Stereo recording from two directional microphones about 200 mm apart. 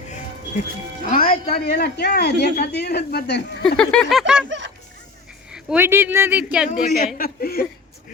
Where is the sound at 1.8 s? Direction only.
50° left (ahead or behind).